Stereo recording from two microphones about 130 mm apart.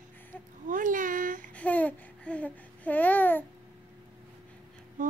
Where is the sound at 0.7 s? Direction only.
85° right.